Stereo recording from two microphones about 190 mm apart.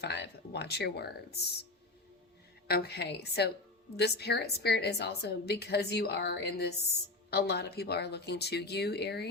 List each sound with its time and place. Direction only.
0.0 s a woman's voice: 60° left (ahead or behind)
2.6 s a woman's voice: 55° left (ahead or behind)